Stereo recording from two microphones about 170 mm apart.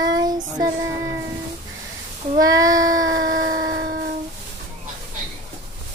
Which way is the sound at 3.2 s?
55° right (ahead or behind).